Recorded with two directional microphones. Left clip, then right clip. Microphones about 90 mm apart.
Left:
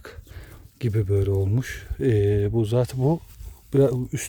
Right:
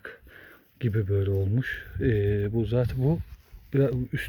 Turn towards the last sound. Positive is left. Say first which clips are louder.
# left 5 dB
turn(degrees=40)  # may be behind; listen again after turning